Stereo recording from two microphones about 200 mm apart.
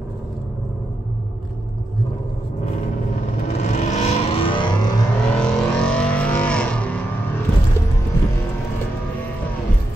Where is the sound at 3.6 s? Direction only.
35° left (ahead or behind).